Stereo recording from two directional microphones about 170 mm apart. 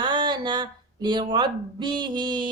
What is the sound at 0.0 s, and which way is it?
Speech, 25° right (ahead or behind).